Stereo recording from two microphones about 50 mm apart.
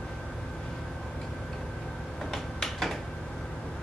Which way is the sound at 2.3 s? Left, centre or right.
Centre.